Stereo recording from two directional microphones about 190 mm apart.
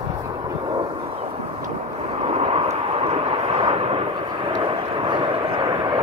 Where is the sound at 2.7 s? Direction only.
30° right (ahead or behind).